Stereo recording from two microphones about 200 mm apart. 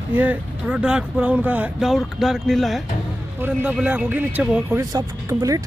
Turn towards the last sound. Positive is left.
turn(degrees=-15)  # may be behind; listen again after turning